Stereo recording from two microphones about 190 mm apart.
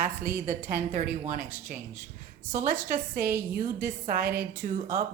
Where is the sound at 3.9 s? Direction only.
45° right (ahead or behind).